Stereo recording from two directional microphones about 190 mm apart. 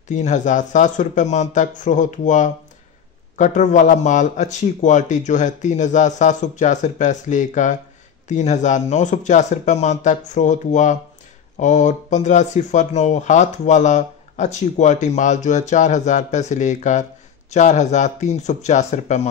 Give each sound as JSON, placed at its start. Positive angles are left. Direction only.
{"t": 0.1, "sound": "speech", "side_deg": 40}